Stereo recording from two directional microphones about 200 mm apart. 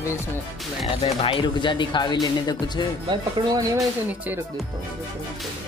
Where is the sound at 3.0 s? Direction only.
20° right (ahead or behind).